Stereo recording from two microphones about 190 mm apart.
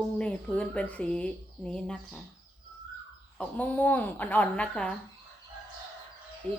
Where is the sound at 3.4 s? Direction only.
10° left (ahead or behind).